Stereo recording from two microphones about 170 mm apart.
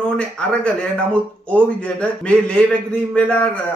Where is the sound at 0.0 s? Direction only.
5° left (ahead or behind).